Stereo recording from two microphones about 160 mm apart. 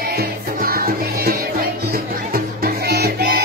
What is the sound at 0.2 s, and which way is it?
Music, 70° right (ahead or behind).